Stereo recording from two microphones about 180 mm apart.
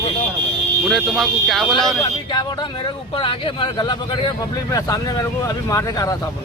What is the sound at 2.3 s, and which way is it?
Speech, 25° left (ahead or behind).